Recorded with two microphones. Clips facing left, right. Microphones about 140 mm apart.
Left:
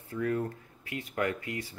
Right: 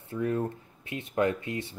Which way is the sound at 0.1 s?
25° right (ahead or behind).